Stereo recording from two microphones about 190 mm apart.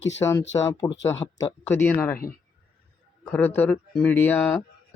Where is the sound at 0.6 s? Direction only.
15° left (ahead or behind).